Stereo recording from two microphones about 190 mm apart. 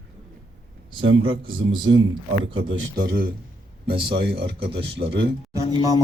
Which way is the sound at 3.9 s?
25° right (ahead or behind).